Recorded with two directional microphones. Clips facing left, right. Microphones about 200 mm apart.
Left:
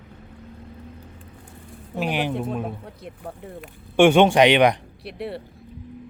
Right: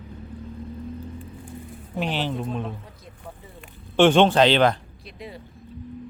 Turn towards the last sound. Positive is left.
turn(degrees=70)  # may be behind; listen again after turning